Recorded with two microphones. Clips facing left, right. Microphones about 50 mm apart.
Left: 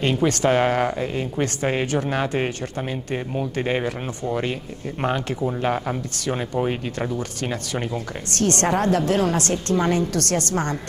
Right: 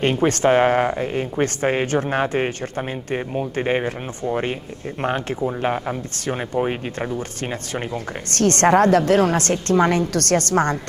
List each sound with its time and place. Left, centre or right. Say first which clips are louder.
0.0 s speech: right 2 dB; right
5.4 s speech: right 1 dB; centre
8.4 s a woman's voice: right 6 dB; right